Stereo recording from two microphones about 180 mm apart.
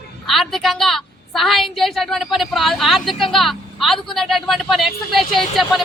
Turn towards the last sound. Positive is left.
turn(degrees=0)  # may be behind; listen again after turning